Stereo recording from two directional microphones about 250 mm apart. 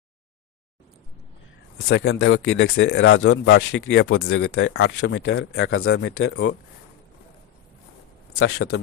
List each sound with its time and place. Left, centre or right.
1.9 s speech: left
8.4 s speech: left